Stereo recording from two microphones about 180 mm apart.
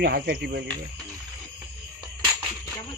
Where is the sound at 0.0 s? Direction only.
60° right (ahead or behind).